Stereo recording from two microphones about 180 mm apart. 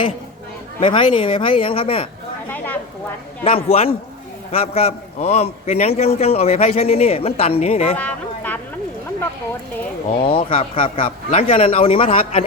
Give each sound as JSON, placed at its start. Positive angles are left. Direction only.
{"t": 0.8, "sound": "speech", "side_deg": 30}
{"t": 3.4, "sound": "a man's voice", "side_deg": 35}
{"t": 7.9, "sound": "speech", "side_deg": 10}
{"t": 10.2, "sound": "a man's voice", "side_deg": 30}